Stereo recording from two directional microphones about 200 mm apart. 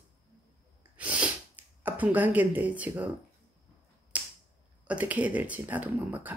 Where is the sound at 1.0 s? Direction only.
5° right (ahead or behind).